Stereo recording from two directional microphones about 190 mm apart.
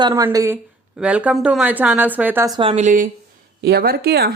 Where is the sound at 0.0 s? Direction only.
15° right (ahead or behind).